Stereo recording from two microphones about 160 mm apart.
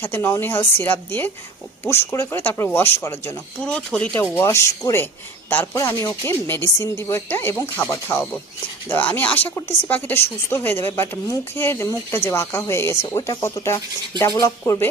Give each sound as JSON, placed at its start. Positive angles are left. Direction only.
{"t": 0.0, "sound": "speech", "side_deg": 15}
{"t": 3.6, "sound": "speech", "side_deg": 5}